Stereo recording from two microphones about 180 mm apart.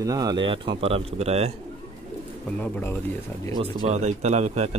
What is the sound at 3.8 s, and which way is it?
Speech, 40° right (ahead or behind).